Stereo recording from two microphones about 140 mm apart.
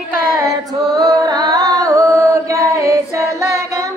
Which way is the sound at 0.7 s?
25° right (ahead or behind).